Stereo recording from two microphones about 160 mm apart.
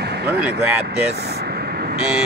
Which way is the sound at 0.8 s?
90° right.